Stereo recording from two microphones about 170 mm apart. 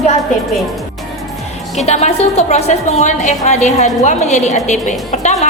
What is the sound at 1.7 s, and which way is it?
A woman's voice, 40° left (ahead or behind).